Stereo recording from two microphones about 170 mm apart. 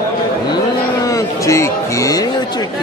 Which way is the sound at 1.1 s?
20° left (ahead or behind).